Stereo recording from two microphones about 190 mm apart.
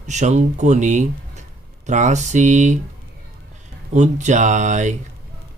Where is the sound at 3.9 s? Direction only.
40° right (ahead or behind).